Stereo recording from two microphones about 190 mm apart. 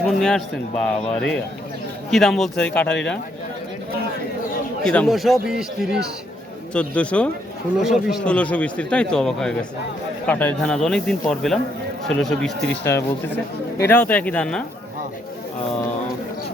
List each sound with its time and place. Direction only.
0.0 s a sound: 5° left (ahead or behind)
0.9 s a man's voice: 5° left (ahead or behind)
4.8 s a man's voice: 5° left (ahead or behind)